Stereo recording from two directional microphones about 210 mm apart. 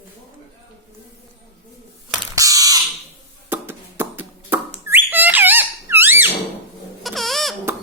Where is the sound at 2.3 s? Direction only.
15° right (ahead or behind).